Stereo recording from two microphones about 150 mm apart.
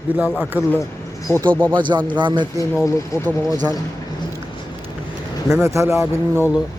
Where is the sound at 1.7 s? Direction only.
30° right (ahead or behind).